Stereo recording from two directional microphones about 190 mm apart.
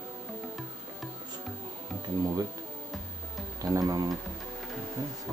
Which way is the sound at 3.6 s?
20° right (ahead or behind).